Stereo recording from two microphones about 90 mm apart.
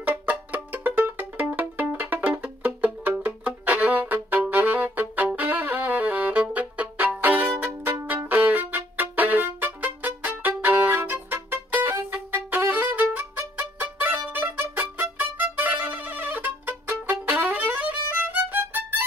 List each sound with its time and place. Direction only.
0.0 s music: 20° right (ahead or behind)
7.2 s violin: 20° right (ahead or behind)
7.4 s music: 10° right (ahead or behind)
7.8 s music: 25° right (ahead or behind)